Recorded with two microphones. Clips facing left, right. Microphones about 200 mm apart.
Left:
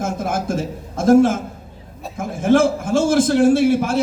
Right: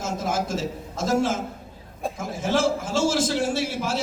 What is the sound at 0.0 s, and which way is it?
A man's voice, 55° left (ahead or behind).